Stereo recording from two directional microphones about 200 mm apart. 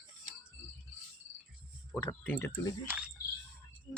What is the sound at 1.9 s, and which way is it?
Speech, 10° left (ahead or behind).